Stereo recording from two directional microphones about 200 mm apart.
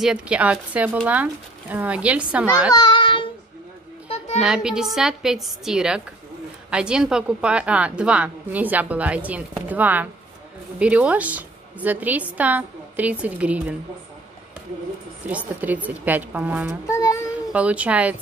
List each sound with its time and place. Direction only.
0.0 s a woman's voice: 5° right (ahead or behind)
2.7 s a child's voice: 20° left (ahead or behind)
4.4 s a woman's voice: 5° right (ahead or behind)
15.2 s a woman's voice: 10° right (ahead or behind)
16.8 s a child's voice: 15° left (ahead or behind)
17.5 s a woman's voice: 5° right (ahead or behind)